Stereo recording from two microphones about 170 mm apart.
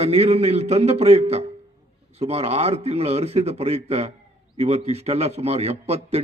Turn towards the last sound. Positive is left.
turn(degrees=-40)  # may be behind; listen again after turning